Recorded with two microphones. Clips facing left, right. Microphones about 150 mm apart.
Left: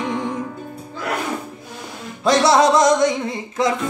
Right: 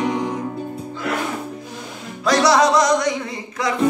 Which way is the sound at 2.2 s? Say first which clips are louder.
Left 1 dB; 25° left (ahead or behind).